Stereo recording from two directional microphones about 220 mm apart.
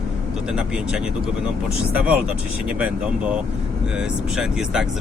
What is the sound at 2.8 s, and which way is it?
Speech, 5° right (ahead or behind).